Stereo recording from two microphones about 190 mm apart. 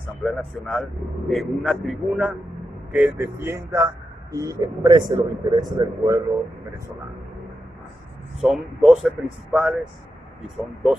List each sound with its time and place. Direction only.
0.2 s speech: centre (ahead or behind); by 6.2 s 20° right (ahead or behind)
8.4 s speech: centre (ahead or behind)